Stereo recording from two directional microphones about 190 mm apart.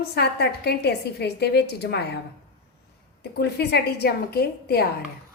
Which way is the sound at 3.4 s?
60° left (ahead or behind).